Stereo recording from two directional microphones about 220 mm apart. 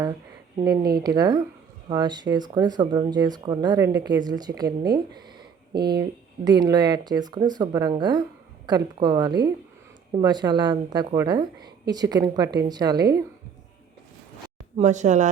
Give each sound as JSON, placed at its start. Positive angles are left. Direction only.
{"t": 0.6, "sound": "a woman's voice", "side_deg": -15}
{"t": 5.7, "sound": "speech", "side_deg": -45}
{"t": 6.0, "sound": "a woman's voice", "side_deg": -20}
{"t": 14.8, "sound": "speech", "side_deg": -30}